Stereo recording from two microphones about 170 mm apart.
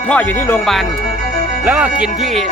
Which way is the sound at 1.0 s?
45° left (ahead or behind).